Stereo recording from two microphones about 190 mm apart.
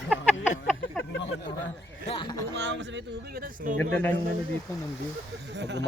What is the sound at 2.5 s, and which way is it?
Speech, 70° right (ahead or behind).